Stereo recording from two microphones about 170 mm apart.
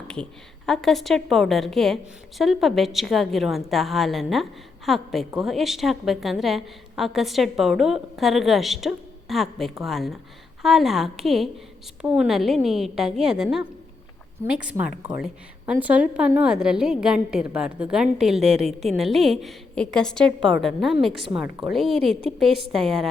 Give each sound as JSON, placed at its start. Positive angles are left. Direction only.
{"t": 0.1, "sound": "a woman's voice", "side_deg": 5}